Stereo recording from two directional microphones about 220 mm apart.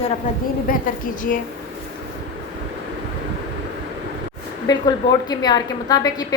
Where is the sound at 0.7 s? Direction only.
40° left (ahead or behind).